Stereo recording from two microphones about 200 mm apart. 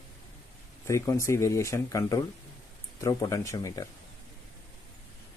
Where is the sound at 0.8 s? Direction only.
15° left (ahead or behind).